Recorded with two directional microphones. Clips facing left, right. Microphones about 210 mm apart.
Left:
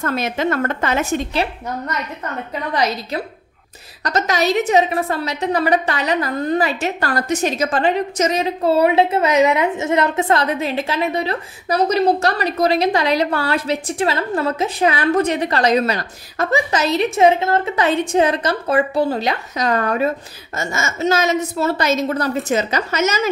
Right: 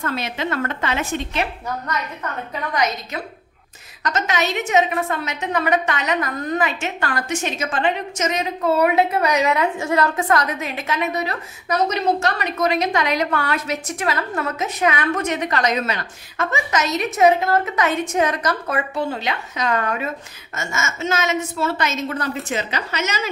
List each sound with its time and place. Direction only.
0.0 s a woman's voice: 45° left (ahead or behind)
2.7 s a woman's voice: 30° left (ahead or behind)